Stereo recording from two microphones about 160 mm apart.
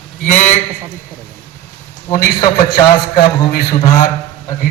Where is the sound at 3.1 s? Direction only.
70° left (ahead or behind).